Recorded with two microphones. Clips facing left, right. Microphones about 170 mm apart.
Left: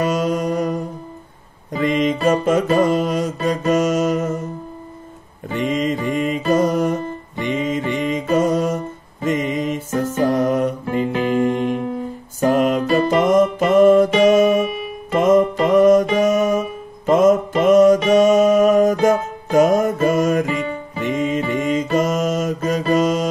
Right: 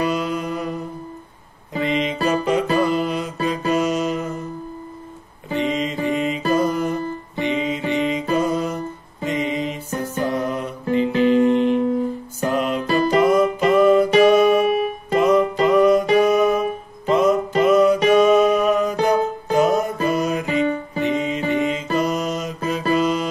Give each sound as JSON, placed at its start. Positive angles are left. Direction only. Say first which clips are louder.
{"t": 0.0, "sound": "mantra", "louder": "left 3 dB", "side_deg": 45}
{"t": 1.7, "sound": "music", "louder": "left 4 dB", "side_deg": 45}
{"t": 5.5, "sound": "music", "louder": "left 2 dB", "side_deg": 45}